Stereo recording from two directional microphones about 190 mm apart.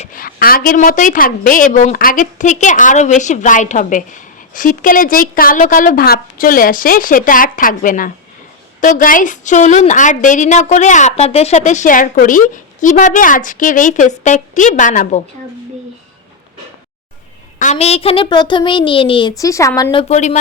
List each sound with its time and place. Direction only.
0.0 s a woman's voice: 45° left (ahead or behind)
17.6 s a woman's voice: 35° left (ahead or behind)